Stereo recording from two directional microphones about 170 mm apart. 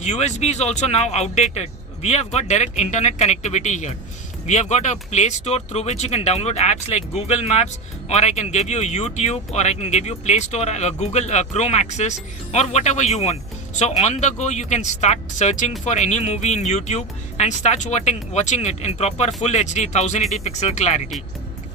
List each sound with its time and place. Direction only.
0.0 s speech: 40° left (ahead or behind)